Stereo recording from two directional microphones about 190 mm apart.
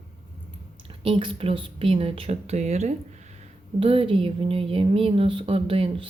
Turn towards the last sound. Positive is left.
turn(degrees=-30)  # may be behind; listen again after turning